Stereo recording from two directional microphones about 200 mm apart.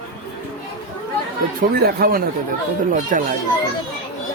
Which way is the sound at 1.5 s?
50° right (ahead or behind).